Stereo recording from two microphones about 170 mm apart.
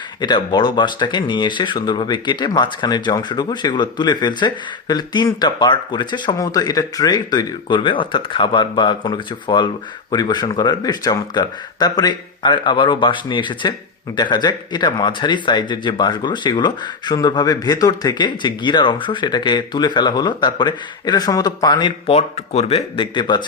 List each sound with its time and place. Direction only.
0.2 s speech: 25° left (ahead or behind)